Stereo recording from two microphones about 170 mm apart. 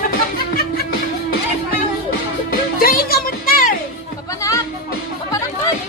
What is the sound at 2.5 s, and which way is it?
Music, 60° left (ahead or behind).